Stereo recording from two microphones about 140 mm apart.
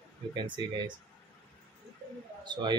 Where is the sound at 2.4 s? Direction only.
30° right (ahead or behind).